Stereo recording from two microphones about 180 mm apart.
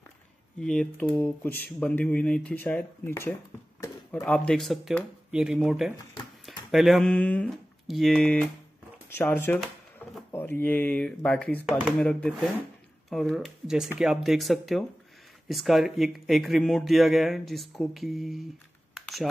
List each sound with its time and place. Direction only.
0.6 s speech: 5° left (ahead or behind)
18.9 s computer keyboard: centre (ahead or behind)